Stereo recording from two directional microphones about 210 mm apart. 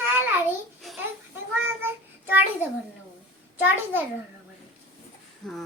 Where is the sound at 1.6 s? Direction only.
10° right (ahead or behind).